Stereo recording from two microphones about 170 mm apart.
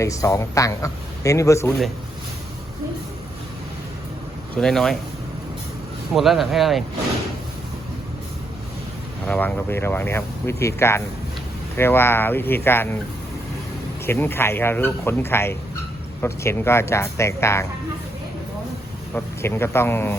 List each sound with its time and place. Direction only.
0.0 s speech: 20° left (ahead or behind)
4.6 s speech: centre (ahead or behind)
6.1 s speech: centre (ahead or behind)
9.2 s speech: 10° left (ahead or behind)
14.1 s speech: 15° left (ahead or behind)
19.1 s speech: 15° left (ahead or behind)